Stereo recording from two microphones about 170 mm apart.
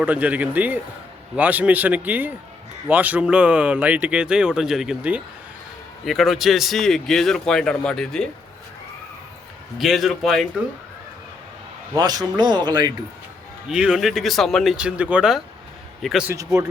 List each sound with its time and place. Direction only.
0.0 s a man's voice: 10° right (ahead or behind)
9.7 s a man's voice: centre (ahead or behind)
11.9 s speech: 25° right (ahead or behind)
13.7 s a man's voice: 5° right (ahead or behind)